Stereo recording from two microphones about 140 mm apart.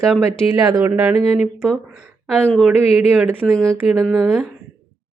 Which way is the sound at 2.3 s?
5° left (ahead or behind).